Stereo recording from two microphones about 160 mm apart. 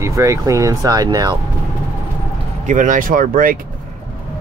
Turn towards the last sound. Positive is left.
turn(degrees=-60)  # may be behind; listen again after turning